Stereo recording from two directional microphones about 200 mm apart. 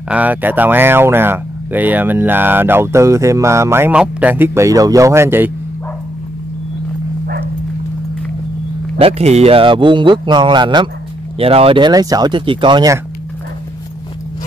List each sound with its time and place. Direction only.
0.1 s speech: 10° right (ahead or behind)
9.0 s speech: 30° right (ahead or behind)